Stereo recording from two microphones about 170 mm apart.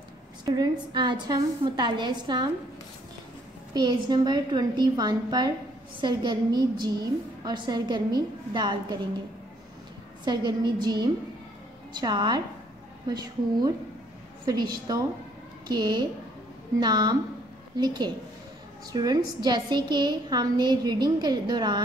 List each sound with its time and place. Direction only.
0.5 s a woman's voice: 25° right (ahead or behind)
3.7 s a woman's voice: 25° right (ahead or behind)
10.2 s a woman's voice: 25° right (ahead or behind)